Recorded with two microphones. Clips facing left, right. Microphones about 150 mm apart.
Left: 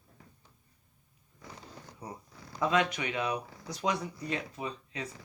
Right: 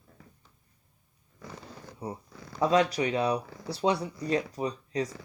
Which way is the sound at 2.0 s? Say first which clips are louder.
Right 7 dB; 25° right (ahead or behind).